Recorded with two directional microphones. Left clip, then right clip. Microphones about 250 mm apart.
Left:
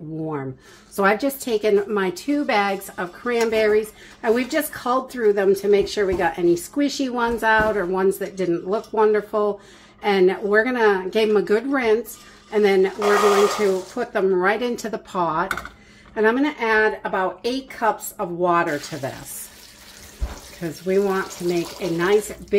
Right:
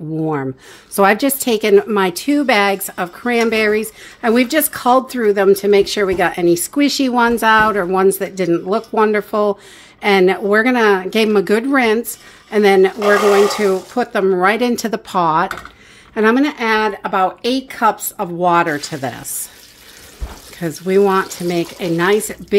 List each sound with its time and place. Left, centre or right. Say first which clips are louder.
0.2 s speech: right 8 dB; right
13.9 s speech: right 5 dB; right
20.5 s speech: right 6 dB; right